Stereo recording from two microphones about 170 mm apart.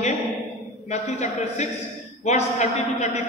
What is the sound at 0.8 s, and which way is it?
A man's voice, 45° left (ahead or behind).